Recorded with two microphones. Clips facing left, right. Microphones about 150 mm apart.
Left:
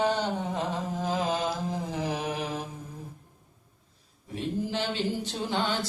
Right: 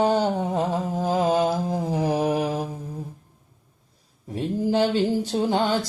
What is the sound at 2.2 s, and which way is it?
Mantra, 35° right (ahead or behind).